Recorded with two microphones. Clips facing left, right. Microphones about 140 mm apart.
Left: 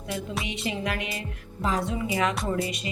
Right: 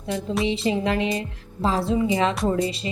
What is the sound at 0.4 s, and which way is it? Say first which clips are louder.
A woman's voice: right 8 dB; 30° right (ahead or behind).